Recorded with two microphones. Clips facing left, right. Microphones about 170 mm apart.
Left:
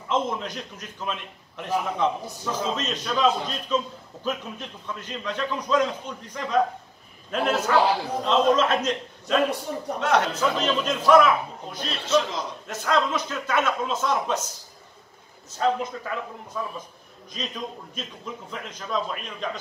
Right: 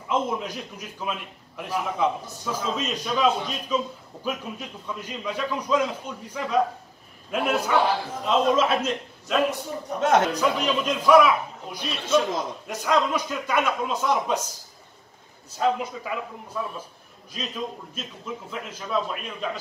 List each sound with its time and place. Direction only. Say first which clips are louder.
0.1 s a man's voice: even; 10° right (ahead or behind)
9.9 s speech: right 3 dB; 50° right (ahead or behind)
10.3 s a man's voice: even; 10° right (ahead or behind)
15.5 s a man's voice: even; 10° right (ahead or behind)
17.3 s a man's voice: right 1 dB; 5° right (ahead or behind)